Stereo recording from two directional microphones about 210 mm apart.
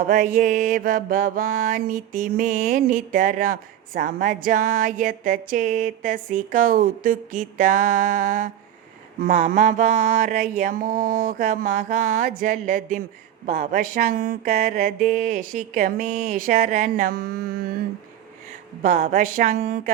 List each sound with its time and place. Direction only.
0.1 s mantra: 35° right (ahead or behind)
18.8 s mantra: 35° right (ahead or behind)
19.6 s speech: 50° right (ahead or behind)